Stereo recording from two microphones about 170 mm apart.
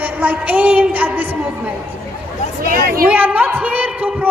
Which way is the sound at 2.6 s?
60° right (ahead or behind).